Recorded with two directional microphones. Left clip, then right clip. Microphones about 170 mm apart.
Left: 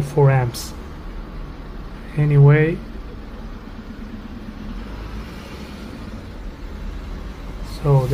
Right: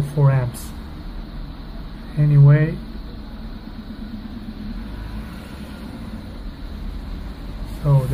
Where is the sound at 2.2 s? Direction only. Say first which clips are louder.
Left 4 dB; 45° left (ahead or behind).